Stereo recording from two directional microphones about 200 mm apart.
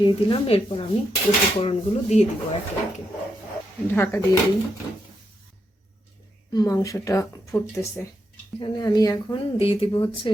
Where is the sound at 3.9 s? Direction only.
10° left (ahead or behind).